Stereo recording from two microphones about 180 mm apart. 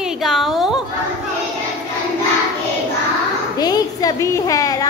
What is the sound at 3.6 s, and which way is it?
A child's voice, 20° left (ahead or behind).